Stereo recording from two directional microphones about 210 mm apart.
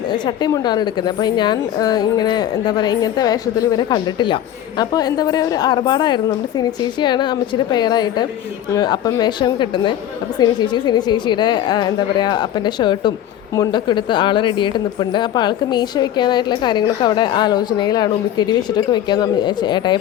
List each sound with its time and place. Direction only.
0.1 s speech: 20° left (ahead or behind)